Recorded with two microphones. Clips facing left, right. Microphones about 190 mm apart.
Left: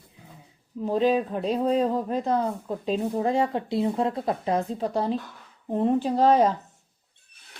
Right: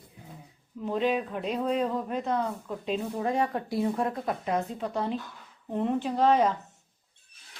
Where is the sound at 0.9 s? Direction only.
35° left (ahead or behind).